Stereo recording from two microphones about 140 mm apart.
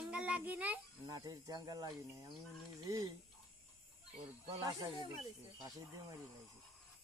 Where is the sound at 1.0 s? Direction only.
25° right (ahead or behind).